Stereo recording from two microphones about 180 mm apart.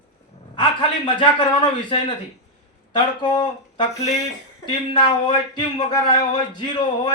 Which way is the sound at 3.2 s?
25° left (ahead or behind).